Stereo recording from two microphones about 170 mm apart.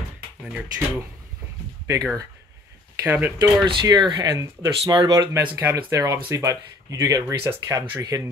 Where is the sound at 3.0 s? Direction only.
10° right (ahead or behind).